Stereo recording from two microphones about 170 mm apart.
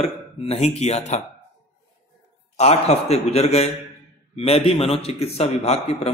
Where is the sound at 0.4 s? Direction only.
35° left (ahead or behind).